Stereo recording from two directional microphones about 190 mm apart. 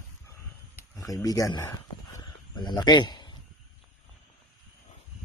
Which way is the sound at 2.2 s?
20° left (ahead or behind).